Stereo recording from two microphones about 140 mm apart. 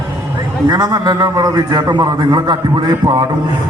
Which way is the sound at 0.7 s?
30° right (ahead or behind).